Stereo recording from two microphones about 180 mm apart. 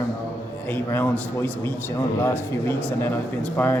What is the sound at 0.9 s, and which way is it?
A man's voice, 10° left (ahead or behind).